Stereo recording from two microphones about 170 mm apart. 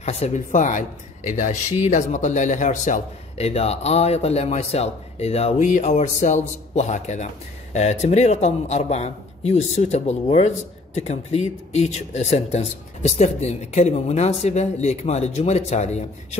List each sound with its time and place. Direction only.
0.0 s speech: 40° left (ahead or behind)